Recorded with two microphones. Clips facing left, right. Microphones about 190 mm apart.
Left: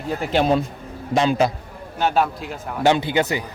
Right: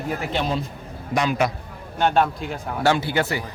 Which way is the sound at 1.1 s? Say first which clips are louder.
Left 3 dB; 30° left (ahead or behind).